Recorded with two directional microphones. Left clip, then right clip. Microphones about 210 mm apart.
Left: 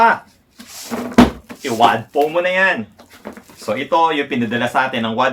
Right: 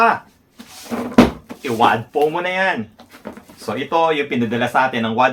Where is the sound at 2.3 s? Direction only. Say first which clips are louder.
Left 4 dB; 5° right (ahead or behind).